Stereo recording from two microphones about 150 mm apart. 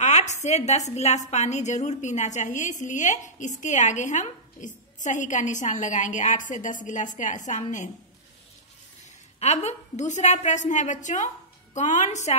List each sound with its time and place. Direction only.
0.0 s a woman's voice: 50° left (ahead or behind)
9.4 s a woman's voice: 45° left (ahead or behind)